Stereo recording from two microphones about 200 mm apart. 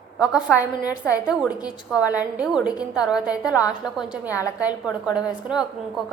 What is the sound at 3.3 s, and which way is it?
Speech, 20° left (ahead or behind).